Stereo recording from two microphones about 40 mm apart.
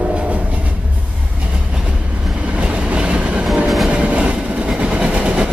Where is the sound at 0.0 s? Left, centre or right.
Right.